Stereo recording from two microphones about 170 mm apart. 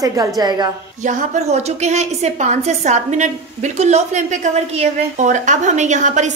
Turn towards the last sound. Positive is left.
turn(degrees=-45)  # may be behind; listen again after turning